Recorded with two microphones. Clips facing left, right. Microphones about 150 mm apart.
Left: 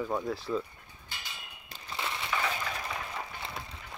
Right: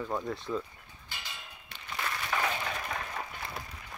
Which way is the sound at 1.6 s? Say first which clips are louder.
Even; 35° left (ahead or behind).